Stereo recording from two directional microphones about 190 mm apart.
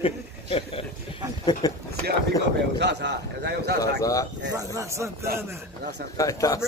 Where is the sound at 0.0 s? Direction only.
30° left (ahead or behind).